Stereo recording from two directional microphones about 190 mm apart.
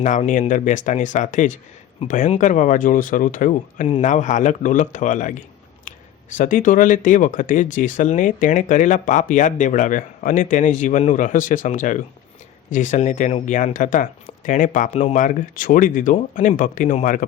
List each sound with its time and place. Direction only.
0.0 s speech: 40° left (ahead or behind)